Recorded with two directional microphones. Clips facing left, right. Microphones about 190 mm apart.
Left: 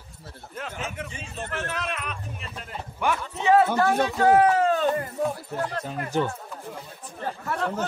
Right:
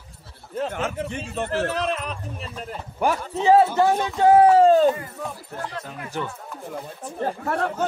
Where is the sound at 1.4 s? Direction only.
35° right (ahead or behind).